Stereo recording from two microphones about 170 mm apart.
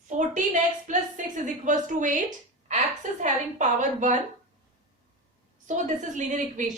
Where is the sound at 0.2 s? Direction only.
45° right (ahead or behind).